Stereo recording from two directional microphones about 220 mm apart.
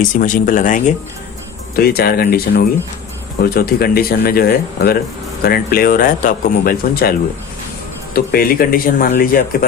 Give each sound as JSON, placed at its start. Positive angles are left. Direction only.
{"t": 0.2, "sound": "speech", "side_deg": 35}